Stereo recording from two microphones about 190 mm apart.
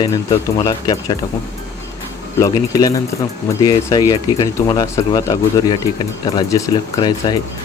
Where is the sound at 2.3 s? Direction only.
20° left (ahead or behind).